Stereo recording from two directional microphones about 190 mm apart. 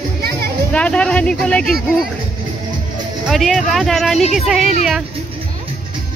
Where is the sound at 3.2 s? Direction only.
Centre (ahead or behind).